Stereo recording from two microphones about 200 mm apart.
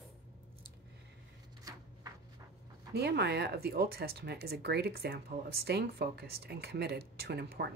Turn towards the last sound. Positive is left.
turn(degrees=-55)  # may be behind; listen again after turning